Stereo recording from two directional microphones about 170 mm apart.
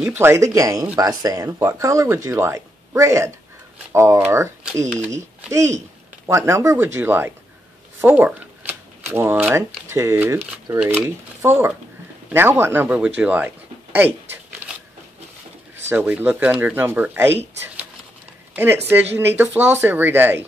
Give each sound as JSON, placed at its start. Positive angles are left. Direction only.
{"t": 0.0, "sound": "speech", "side_deg": -10}
{"t": 15.7, "sound": "speech", "side_deg": -15}
{"t": 18.5, "sound": "speech", "side_deg": -10}